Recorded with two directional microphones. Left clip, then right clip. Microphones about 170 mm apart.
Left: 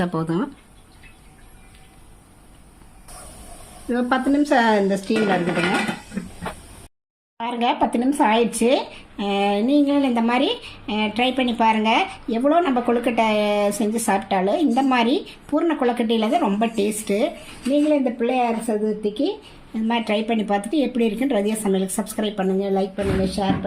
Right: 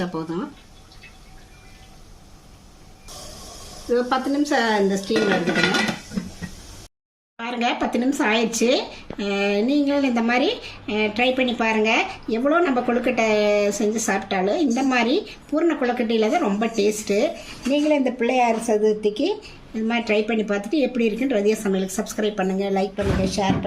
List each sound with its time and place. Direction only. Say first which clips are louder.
0.0 s speech: left 4 dB; 60° left (ahead or behind)
3.9 s speech: left 1 dB; 45° left (ahead or behind)
7.3 s speech: left 3 dB; 30° left (ahead or behind)
22.8 s speech: even; centre (ahead or behind)